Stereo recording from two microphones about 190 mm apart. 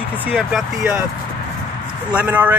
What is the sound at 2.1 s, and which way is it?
Speech, 10° right (ahead or behind).